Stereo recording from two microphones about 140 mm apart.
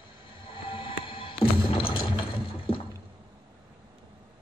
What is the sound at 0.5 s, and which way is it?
Music, 35° left (ahead or behind).